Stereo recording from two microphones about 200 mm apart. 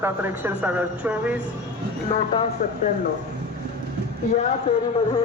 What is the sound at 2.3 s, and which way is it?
Speech, 30° left (ahead or behind).